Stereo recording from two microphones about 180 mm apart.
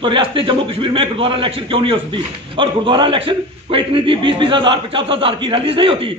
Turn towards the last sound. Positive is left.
turn(degrees=-30)  # may be behind; listen again after turning